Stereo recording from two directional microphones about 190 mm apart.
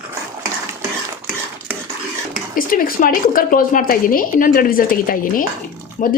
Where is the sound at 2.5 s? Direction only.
50° left (ahead or behind).